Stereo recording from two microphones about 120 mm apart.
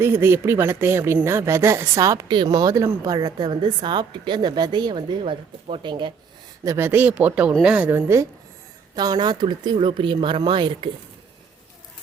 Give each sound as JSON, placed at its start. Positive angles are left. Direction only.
{"t": 0.0, "sound": "speech", "side_deg": -20}
{"t": 6.7, "sound": "a woman's voice", "side_deg": -20}
{"t": 9.0, "sound": "speech", "side_deg": -35}